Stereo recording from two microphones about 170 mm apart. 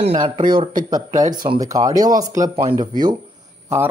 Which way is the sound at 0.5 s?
25° right (ahead or behind).